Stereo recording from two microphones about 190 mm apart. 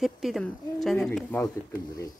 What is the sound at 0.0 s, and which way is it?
Speech, centre (ahead or behind).